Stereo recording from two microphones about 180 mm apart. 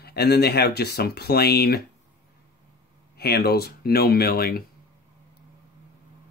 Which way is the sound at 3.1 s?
60° left (ahead or behind).